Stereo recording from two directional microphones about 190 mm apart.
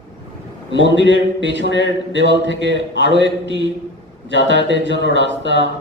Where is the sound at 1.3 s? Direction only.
70° right (ahead or behind).